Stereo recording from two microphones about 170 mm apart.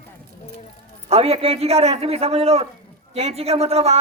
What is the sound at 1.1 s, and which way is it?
Speech, 35° right (ahead or behind).